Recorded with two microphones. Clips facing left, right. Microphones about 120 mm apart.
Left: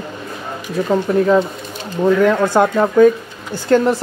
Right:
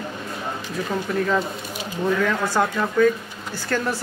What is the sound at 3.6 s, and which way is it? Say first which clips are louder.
Speech: left 11 dB; 25° left (ahead or behind).